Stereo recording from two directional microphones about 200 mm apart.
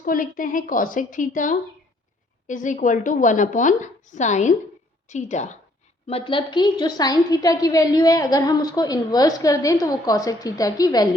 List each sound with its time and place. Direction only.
0.0 s a woman's voice: 45° left (ahead or behind); by 11.1 s 20° left (ahead or behind)